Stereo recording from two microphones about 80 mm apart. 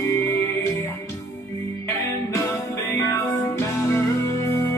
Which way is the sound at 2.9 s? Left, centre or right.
Left.